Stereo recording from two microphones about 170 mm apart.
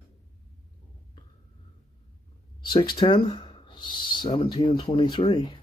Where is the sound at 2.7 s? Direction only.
25° left (ahead or behind).